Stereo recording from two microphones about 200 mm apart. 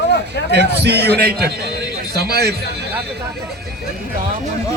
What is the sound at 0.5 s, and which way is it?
A man's voice, 55° right (ahead or behind).